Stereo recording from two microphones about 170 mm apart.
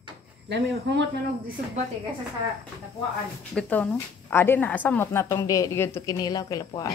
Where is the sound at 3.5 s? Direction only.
5° left (ahead or behind).